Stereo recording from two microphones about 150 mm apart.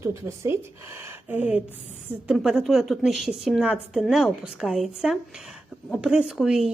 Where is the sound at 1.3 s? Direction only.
10° right (ahead or behind).